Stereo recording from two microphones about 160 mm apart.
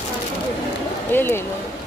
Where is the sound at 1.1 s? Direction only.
15° left (ahead or behind).